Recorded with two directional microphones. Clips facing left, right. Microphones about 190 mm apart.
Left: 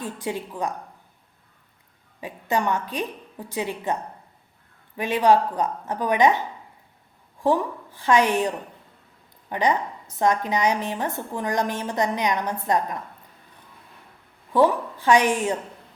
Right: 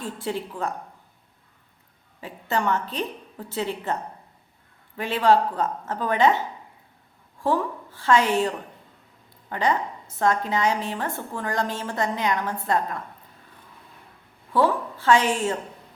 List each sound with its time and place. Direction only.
0.0 s a woman's voice: 15° left (ahead or behind)
2.2 s a woman's voice: 15° left (ahead or behind)
4.9 s a woman's voice: 15° left (ahead or behind)
7.4 s a woman's voice: 15° left (ahead or behind)
14.5 s a woman's voice: 15° left (ahead or behind)